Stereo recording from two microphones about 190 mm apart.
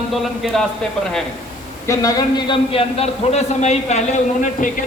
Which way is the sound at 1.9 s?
20° left (ahead or behind).